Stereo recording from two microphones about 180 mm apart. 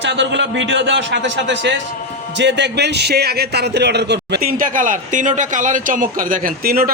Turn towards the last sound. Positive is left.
turn(degrees=-55)  # may be behind; listen again after turning